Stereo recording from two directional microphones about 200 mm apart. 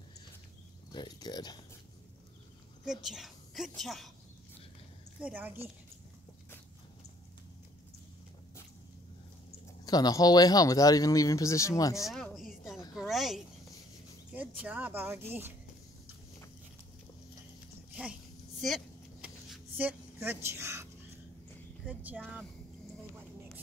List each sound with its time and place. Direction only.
0.9 s speech: 20° left (ahead or behind)
2.8 s a woman's voice: centre (ahead or behind)
5.2 s speech: 10° right (ahead or behind)
9.8 s speech: 20° left (ahead or behind)
12.1 s a sound: centre (ahead or behind)
14.3 s speech: 10° right (ahead or behind)
18.6 s a woman's voice: centre (ahead or behind)
19.2 s a sound: 5° right (ahead or behind)
21.8 s speech: 5° right (ahead or behind)